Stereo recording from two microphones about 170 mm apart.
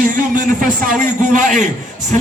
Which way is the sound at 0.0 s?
55° right (ahead or behind).